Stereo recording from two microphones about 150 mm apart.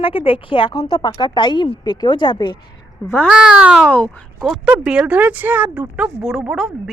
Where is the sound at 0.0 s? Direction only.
40° left (ahead or behind).